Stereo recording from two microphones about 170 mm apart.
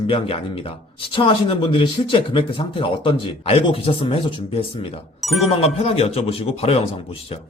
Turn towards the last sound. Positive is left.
turn(degrees=35)  # may be behind; listen again after turning